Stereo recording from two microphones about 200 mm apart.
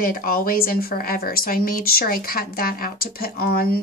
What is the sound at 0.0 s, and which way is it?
A woman's voice, 45° left (ahead or behind).